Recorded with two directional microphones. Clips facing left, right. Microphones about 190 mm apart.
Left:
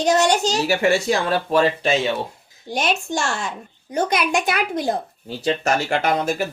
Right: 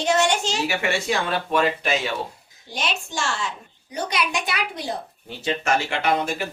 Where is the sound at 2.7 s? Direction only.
50° left (ahead or behind).